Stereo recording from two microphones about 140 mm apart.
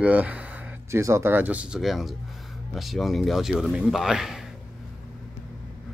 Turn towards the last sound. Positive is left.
turn(degrees=-5)  # may be behind; listen again after turning